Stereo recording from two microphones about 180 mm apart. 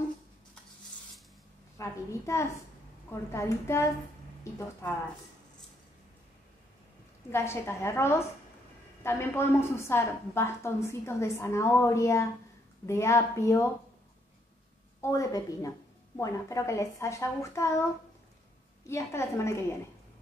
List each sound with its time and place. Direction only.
1.8 s a woman's voice: 15° left (ahead or behind)
7.2 s a woman's voice: 15° left (ahead or behind)
15.0 s a woman's voice: 15° left (ahead or behind)
18.9 s a woman's voice: 15° left (ahead or behind)